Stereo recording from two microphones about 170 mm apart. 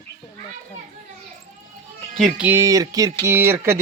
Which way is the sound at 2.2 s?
10° right (ahead or behind).